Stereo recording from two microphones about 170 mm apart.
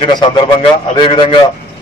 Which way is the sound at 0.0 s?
30° left (ahead or behind).